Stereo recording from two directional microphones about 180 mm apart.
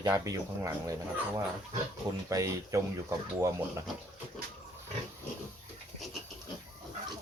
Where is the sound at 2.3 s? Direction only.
20° right (ahead or behind).